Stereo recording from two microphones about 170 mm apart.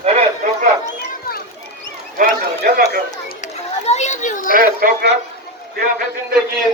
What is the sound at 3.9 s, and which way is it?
Children playing, 40° left (ahead or behind).